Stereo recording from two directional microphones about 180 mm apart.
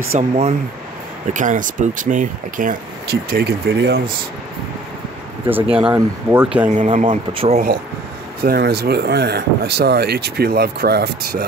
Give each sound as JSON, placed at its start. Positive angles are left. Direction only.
{"t": 0.1, "sound": "speech", "side_deg": -35}
{"t": 5.5, "sound": "speech", "side_deg": -10}
{"t": 6.7, "sound": "speech", "side_deg": -40}
{"t": 8.5, "sound": "speech", "side_deg": -60}